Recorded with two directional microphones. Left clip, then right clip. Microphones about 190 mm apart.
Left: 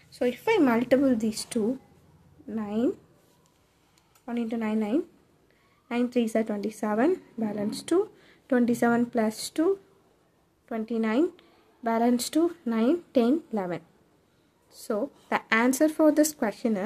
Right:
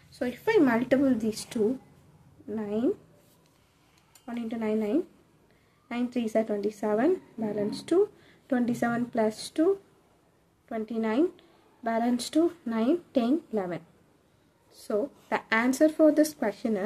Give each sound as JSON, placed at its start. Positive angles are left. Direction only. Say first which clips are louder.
{"t": 0.1, "sound": "a woman's voice", "louder": "left 1 dB", "side_deg": 25}
{"t": 4.3, "sound": "a woman's voice", "louder": "left 1 dB", "side_deg": 25}
{"t": 10.7, "sound": "a woman's voice", "louder": "left 2 dB", "side_deg": 30}